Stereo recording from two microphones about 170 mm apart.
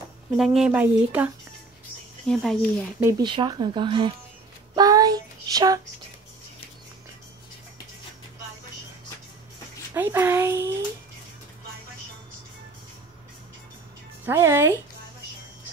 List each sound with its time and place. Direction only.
0.4 s speech: centre (ahead or behind)
2.2 s speech: 5° left (ahead or behind)
3.0 s speech: 15° right (ahead or behind)
3.3 s speech: 25° right (ahead or behind)
4.7 s child singing: 20° right (ahead or behind)
9.9 s speech: 15° right (ahead or behind)
14.2 s speech: 15° right (ahead or behind)